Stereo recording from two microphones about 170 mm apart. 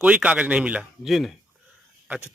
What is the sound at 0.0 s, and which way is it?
A man's voice, 10° right (ahead or behind).